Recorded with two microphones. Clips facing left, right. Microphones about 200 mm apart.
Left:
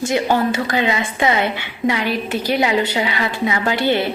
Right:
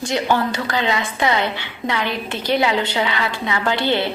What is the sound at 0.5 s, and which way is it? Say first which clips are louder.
A woman's voice: left 2 dB; 15° left (ahead or behind).